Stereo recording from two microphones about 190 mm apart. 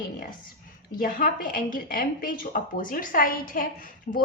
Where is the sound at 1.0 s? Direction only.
45° left (ahead or behind).